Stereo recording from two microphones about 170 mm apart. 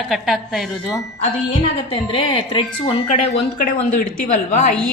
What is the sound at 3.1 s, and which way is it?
A woman's voice, 45° left (ahead or behind).